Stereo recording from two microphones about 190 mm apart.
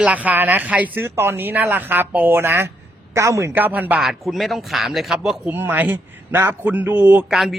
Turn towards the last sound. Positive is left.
turn(degrees=0)  # may be behind; listen again after turning